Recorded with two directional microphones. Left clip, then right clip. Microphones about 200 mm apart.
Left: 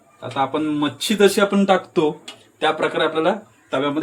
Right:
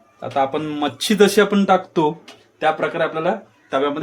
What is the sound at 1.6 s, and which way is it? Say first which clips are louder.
Speech: right 1 dB; 15° right (ahead or behind).